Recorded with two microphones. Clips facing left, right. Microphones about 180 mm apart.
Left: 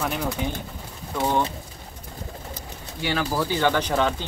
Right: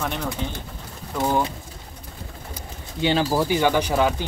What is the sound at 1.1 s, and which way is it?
Speech, 5° right (ahead or behind).